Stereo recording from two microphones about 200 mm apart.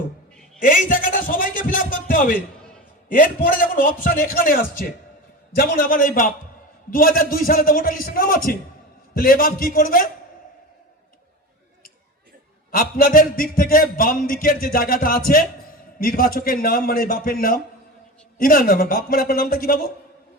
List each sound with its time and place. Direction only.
0.6 s a man's voice: 40° left (ahead or behind)
12.7 s a man's voice: 45° left (ahead or behind)